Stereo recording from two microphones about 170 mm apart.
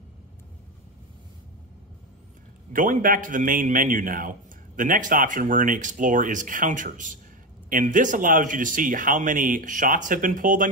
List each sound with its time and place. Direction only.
2.7 s a man's voice: 50° right (ahead or behind)